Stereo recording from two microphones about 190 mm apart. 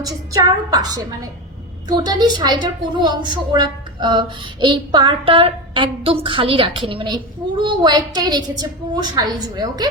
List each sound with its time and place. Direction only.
0.0 s a woman's voice: 20° right (ahead or behind)